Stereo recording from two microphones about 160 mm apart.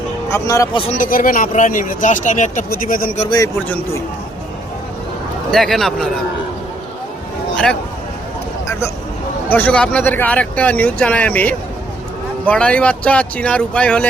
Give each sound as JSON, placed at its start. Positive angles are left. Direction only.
{"t": 0.3, "sound": "speech", "side_deg": 20}
{"t": 0.9, "sound": "speech", "side_deg": 55}
{"t": 2.6, "sound": "speech", "side_deg": 65}
{"t": 5.5, "sound": "speech", "side_deg": 0}
{"t": 7.5, "sound": "speech", "side_deg": 5}
{"t": 8.6, "sound": "vehicle", "side_deg": 15}
{"t": 9.5, "sound": "speech", "side_deg": 10}